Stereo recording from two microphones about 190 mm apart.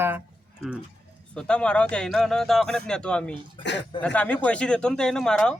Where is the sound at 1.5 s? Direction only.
5° left (ahead or behind).